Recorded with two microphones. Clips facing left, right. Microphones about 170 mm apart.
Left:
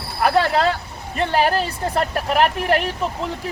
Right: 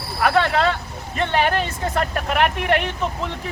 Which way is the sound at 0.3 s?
35° left (ahead or behind).